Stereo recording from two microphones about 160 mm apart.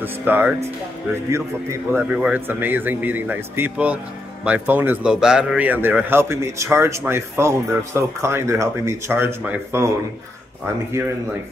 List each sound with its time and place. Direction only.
0.0 s speech: 10° right (ahead or behind)